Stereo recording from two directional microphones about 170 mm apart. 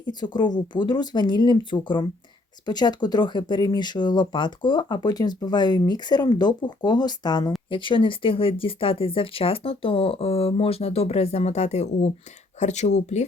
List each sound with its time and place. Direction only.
0.0 s speech: 25° left (ahead or behind); by 13.2 s 40° left (ahead or behind)